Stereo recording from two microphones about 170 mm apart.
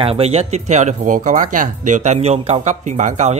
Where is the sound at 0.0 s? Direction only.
35° right (ahead or behind).